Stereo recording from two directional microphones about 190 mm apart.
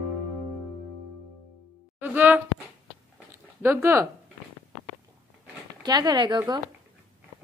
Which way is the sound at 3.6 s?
15° right (ahead or behind).